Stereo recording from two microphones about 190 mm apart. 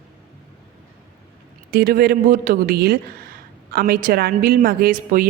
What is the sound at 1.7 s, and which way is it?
Speech, 50° right (ahead or behind).